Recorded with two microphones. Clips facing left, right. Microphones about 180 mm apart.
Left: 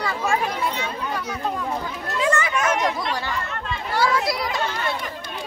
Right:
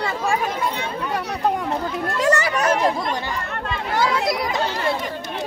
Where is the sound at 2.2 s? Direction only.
40° right (ahead or behind).